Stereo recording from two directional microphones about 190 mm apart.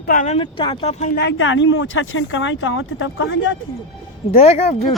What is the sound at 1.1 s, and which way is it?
Speech, 80° left.